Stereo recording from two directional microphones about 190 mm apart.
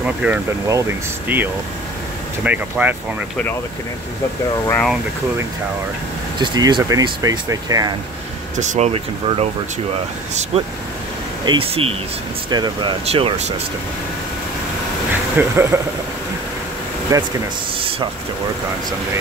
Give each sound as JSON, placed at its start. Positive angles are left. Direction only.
{"t": 0.0, "sound": "speech", "side_deg": -5}
{"t": 4.6, "sound": "speech", "side_deg": 5}
{"t": 6.4, "sound": "speech", "side_deg": -25}
{"t": 8.5, "sound": "speech", "side_deg": -40}
{"t": 10.5, "sound": "speech", "side_deg": -30}
{"t": 13.0, "sound": "speech", "side_deg": -30}
{"t": 15.3, "sound": "speech", "side_deg": -15}
{"t": 17.1, "sound": "speech", "side_deg": -15}